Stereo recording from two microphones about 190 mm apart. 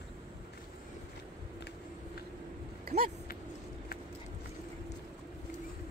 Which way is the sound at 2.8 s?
50° right (ahead or behind).